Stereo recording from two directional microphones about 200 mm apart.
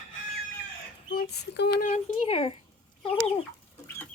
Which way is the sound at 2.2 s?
30° left (ahead or behind).